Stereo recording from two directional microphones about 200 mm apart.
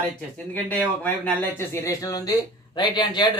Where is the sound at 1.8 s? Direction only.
15° left (ahead or behind).